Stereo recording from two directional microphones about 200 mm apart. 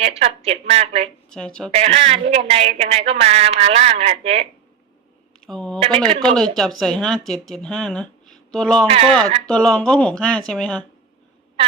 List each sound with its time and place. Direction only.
0.0 s speech: 30° right (ahead or behind)
1.3 s speech: 5° left (ahead or behind)
1.7 s speech: 30° right (ahead or behind)
5.5 s speech: 5° left (ahead or behind)
8.9 s speech: 30° right (ahead or behind)
9.5 s speech: 5° left (ahead or behind)